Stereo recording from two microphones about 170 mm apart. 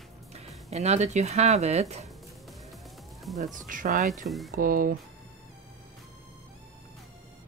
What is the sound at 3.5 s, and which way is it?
Speech, 50° right (ahead or behind).